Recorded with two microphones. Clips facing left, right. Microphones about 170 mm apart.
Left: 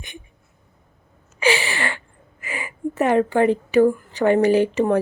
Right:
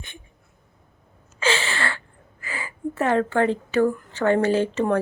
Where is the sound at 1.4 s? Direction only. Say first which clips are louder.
Left 3 dB; 15° left (ahead or behind).